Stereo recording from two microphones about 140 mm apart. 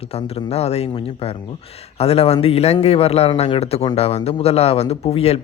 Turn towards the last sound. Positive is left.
turn(degrees=45)  # may be behind; listen again after turning